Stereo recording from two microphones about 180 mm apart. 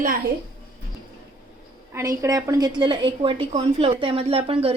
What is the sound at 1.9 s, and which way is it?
A woman's voice, 15° right (ahead or behind).